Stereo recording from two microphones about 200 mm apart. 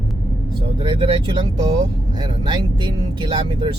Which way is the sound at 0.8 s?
25° right (ahead or behind).